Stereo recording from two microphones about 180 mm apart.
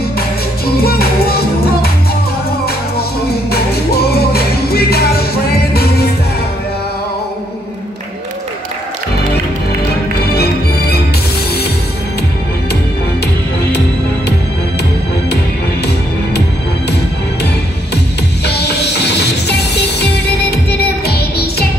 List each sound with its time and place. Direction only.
0.7 s music: 60° left (ahead or behind)
10.3 s music: 60° left (ahead or behind)
18.4 s music: 65° left (ahead or behind)